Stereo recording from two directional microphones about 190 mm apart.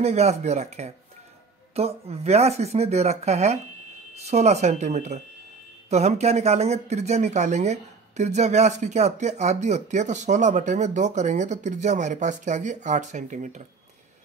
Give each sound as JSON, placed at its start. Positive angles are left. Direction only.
{"t": 0.0, "sound": "speech", "side_deg": -35}